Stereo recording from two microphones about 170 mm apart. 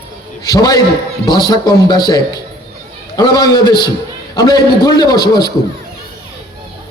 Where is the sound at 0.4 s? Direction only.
20° left (ahead or behind).